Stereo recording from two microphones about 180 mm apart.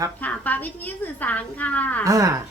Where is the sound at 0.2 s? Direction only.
10° left (ahead or behind).